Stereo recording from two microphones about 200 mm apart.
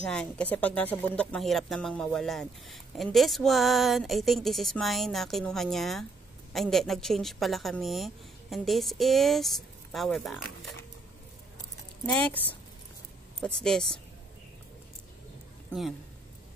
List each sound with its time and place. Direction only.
0.0 s speech: 5° left (ahead or behind)
12.1 s speech: 5° left (ahead or behind)